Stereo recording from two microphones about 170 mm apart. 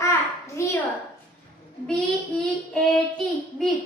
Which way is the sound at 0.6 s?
15° left (ahead or behind).